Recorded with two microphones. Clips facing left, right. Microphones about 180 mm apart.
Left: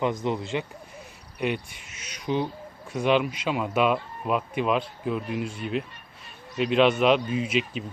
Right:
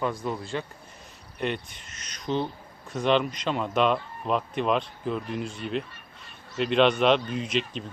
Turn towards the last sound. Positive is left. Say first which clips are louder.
# left 2 dB
turn(degrees=5)  # may be behind; listen again after turning